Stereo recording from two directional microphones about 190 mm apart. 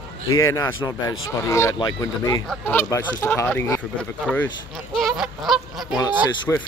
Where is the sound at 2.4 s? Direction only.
5° left (ahead or behind).